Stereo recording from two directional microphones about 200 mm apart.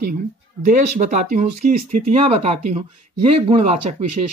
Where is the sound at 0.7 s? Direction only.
40° right (ahead or behind).